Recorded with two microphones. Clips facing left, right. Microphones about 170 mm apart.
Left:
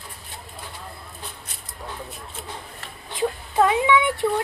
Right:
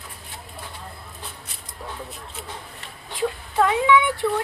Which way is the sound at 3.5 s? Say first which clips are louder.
Even; 25° left (ahead or behind).